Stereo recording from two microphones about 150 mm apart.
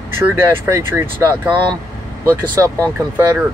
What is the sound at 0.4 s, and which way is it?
Speech, 15° right (ahead or behind).